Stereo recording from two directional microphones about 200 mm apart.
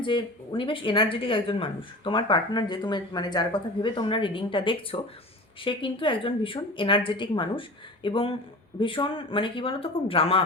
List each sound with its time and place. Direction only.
0.0 s speech: 25° left (ahead or behind)